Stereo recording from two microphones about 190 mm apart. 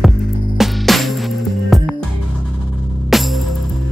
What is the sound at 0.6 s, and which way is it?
Music, centre (ahead or behind).